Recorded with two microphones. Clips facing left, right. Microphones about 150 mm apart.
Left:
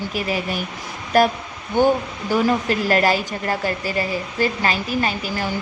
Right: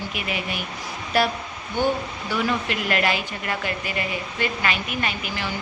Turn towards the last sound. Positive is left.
turn(degrees=35)  # may be behind; listen again after turning